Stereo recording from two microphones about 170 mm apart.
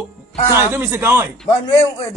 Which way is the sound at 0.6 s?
15° right (ahead or behind).